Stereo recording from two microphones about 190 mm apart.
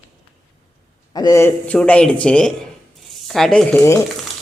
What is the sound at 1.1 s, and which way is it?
A man's voice, 20° left (ahead or behind).